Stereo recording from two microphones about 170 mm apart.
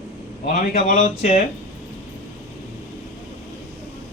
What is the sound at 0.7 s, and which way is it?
Speech, 45° left (ahead or behind).